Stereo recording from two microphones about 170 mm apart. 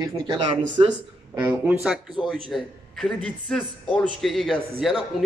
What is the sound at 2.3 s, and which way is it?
A man's voice, 5° left (ahead or behind).